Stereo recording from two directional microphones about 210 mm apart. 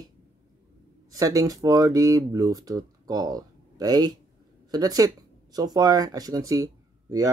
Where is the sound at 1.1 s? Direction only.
15° right (ahead or behind).